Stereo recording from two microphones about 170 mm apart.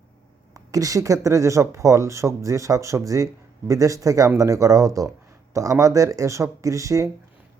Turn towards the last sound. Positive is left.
turn(degrees=-20)  # may be behind; listen again after turning